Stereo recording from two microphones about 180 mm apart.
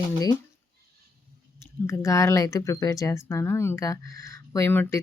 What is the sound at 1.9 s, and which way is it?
Speech, 15° left (ahead or behind).